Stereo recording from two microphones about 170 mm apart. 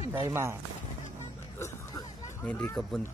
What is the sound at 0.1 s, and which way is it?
Speech, 15° right (ahead or behind).